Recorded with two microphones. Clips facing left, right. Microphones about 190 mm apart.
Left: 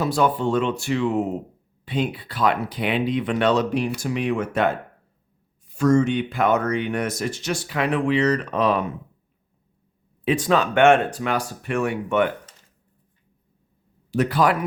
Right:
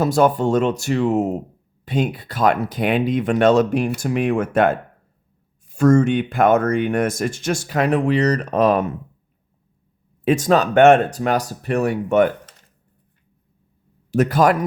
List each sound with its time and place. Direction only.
0.0 s speech: 45° right (ahead or behind)
10.2 s speech: 45° right (ahead or behind)
14.1 s speech: 45° right (ahead or behind)